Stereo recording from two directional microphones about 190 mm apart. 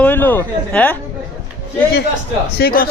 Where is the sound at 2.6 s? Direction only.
50° left (ahead or behind).